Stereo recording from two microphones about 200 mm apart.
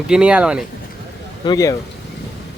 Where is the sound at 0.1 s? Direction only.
5° right (ahead or behind).